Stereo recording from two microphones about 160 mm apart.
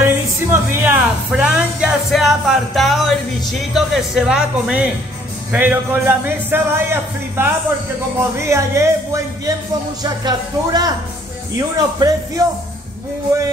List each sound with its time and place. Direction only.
0.0 s a man's voice: 10° right (ahead or behind)